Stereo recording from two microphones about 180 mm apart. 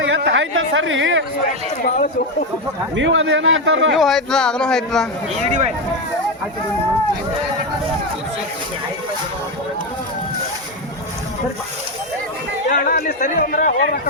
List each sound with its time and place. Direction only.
0.1 s speech: 85° right
2.9 s a man's voice: 90° right
3.9 s a man's voice: centre (ahead or behind)
12.6 s speech: 50° left (ahead or behind)